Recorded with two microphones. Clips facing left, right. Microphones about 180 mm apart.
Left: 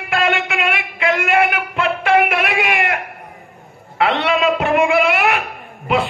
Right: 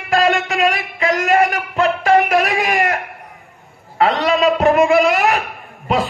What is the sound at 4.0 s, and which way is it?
A man's voice, 40° right (ahead or behind).